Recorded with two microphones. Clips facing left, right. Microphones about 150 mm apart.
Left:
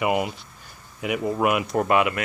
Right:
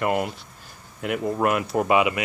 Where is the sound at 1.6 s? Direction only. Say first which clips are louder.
Even; 5° right (ahead or behind).